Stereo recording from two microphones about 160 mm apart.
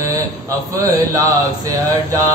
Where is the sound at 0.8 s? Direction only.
20° right (ahead or behind).